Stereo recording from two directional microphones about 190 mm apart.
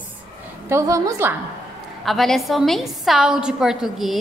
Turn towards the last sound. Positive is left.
turn(degrees=0)  # may be behind; listen again after turning